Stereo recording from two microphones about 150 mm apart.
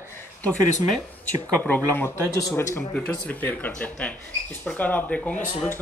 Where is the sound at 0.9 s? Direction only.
10° left (ahead or behind).